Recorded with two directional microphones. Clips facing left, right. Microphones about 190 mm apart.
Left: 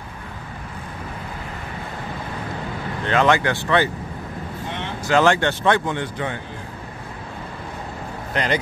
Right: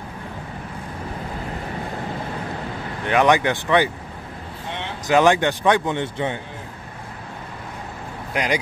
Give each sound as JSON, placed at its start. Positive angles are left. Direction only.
{"t": 3.1, "sound": "speech", "side_deg": -15}
{"t": 5.0, "sound": "speech", "side_deg": -15}
{"t": 8.3, "sound": "speech", "side_deg": -10}